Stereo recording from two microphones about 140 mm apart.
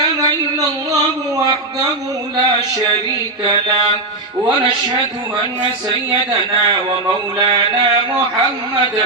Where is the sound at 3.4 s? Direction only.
30° right (ahead or behind).